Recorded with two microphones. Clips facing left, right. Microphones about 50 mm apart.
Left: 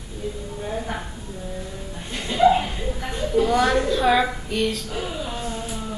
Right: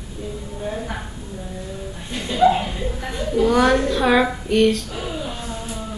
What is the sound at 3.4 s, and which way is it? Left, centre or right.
Speech, centre.